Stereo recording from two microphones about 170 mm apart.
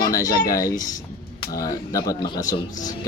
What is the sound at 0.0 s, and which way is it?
Speech, 20° left (ahead or behind).